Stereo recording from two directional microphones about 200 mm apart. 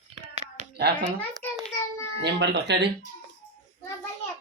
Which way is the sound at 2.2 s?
60° right (ahead or behind).